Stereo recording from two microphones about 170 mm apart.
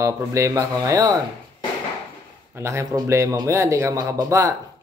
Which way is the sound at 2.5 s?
15° right (ahead or behind).